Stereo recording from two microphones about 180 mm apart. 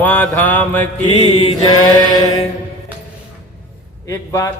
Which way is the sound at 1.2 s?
35° left (ahead or behind).